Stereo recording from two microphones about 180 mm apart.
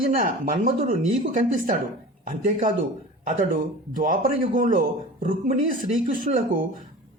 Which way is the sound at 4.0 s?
50° right (ahead or behind).